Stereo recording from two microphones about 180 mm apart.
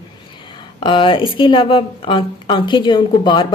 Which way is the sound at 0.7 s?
30° left (ahead or behind).